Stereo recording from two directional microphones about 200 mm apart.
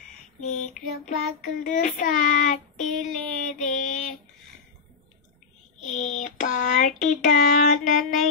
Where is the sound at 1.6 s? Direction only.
40° left (ahead or behind).